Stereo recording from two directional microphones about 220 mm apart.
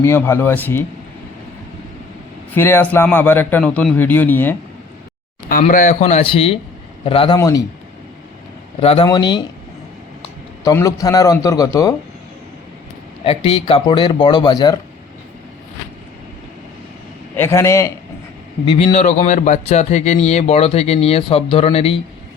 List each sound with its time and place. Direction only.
0.0 s a man's voice: 10° left (ahead or behind)
2.6 s a man's voice: 10° left (ahead or behind)
5.5 s a man's voice: 35° left (ahead or behind); by 7.6 s 15° left (ahead or behind)
8.8 s speech: 25° left (ahead or behind)
10.6 s a man's voice: 15° left (ahead or behind)
13.2 s speech: 25° left (ahead or behind)
17.3 s a man's voice: 10° left (ahead or behind)
18.6 s speech: 25° left (ahead or behind)